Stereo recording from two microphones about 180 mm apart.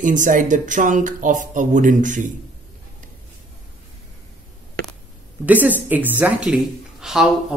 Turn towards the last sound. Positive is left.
turn(degrees=0)  # may be behind; listen again after turning